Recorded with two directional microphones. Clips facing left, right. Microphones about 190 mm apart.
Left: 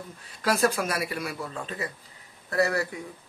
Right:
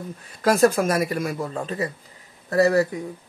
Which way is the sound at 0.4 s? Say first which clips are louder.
Right 7 dB; 45° right (ahead or behind).